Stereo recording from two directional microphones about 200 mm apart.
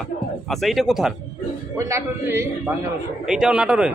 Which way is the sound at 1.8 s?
15° right (ahead or behind).